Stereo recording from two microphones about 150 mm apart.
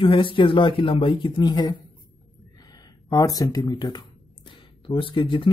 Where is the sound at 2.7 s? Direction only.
25° left (ahead or behind).